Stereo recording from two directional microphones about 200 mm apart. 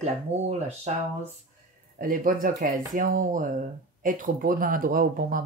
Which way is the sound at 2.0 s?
45° right (ahead or behind).